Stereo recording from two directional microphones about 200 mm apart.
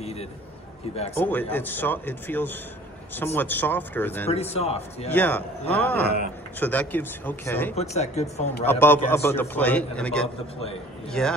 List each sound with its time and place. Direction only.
0.0 s a sound: 30° left (ahead or behind)
1.1 s a man's voice: 10° left (ahead or behind)
4.3 s a man's voice: 30° left (ahead or behind)
5.1 s a man's voice: 10° left (ahead or behind)
7.7 s a man's voice: 35° left (ahead or behind)
8.6 s a man's voice: 10° left (ahead or behind)